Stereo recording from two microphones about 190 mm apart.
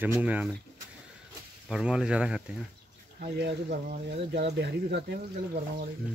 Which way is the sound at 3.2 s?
55° right (ahead or behind).